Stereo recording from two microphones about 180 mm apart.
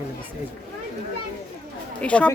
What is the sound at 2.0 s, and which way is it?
Speech, 5° left (ahead or behind).